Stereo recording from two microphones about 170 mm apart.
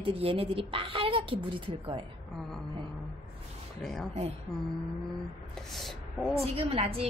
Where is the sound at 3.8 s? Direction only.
Centre (ahead or behind).